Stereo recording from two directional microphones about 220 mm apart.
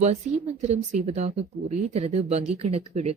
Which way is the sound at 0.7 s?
30° right (ahead or behind).